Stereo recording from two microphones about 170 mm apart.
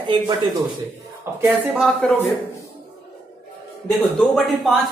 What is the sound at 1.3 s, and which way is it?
Speech, 15° right (ahead or behind).